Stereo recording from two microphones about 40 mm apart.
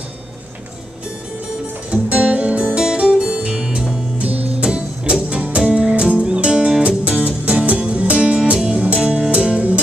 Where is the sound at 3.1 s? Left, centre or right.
Centre.